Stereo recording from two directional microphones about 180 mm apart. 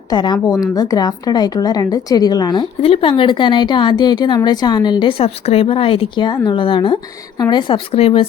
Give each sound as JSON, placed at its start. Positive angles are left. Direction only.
{"t": 0.1, "sound": "a woman's voice", "side_deg": 25}